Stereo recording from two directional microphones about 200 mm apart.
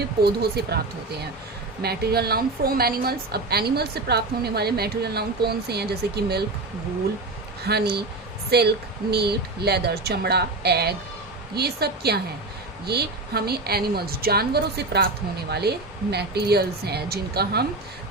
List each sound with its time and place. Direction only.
0.0 s a woman's voice: 50° right (ahead or behind)
1.8 s a woman's voice: 50° right (ahead or behind)
7.6 s a woman's voice: 55° right (ahead or behind)